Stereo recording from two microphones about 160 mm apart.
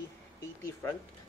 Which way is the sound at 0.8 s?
15° left (ahead or behind).